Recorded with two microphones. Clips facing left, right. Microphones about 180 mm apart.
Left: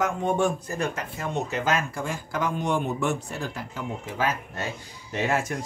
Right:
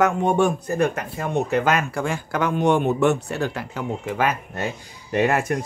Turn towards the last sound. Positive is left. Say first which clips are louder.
# right 6 dB
turn(degrees=-60)  # may be behind; listen again after turning